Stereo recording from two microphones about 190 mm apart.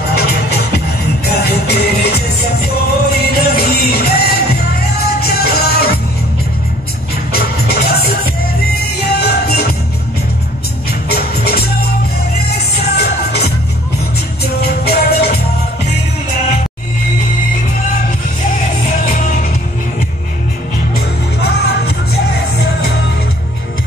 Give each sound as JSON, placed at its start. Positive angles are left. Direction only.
{"t": 0.1, "sound": "music", "side_deg": 55}
{"t": 7.3, "sound": "music", "side_deg": 55}
{"t": 9.2, "sound": "music", "side_deg": 55}
{"t": 10.9, "sound": "music", "side_deg": 55}
{"t": 14.4, "sound": "music", "side_deg": 55}
{"t": 21.4, "sound": "music", "side_deg": 55}